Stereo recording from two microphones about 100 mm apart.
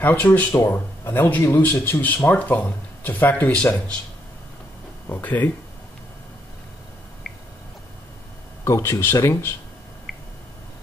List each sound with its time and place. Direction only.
0.0 s speech: 20° left (ahead or behind)
5.1 s speech: 15° left (ahead or behind)
8.6 s speech: 30° left (ahead or behind)